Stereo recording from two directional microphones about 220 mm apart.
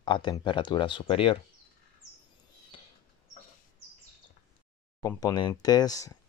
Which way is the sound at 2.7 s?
25° left (ahead or behind).